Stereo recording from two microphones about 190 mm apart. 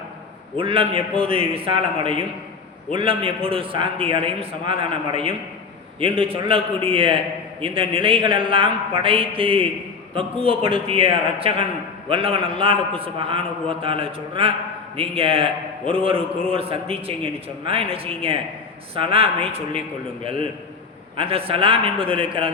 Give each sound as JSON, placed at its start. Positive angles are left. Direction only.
{"t": 0.5, "sound": "a man's voice", "side_deg": -30}
{"t": 15.8, "sound": "a man's voice", "side_deg": 5}
{"t": 16.5, "sound": "a man's voice", "side_deg": -30}
{"t": 21.2, "sound": "a man's voice", "side_deg": -30}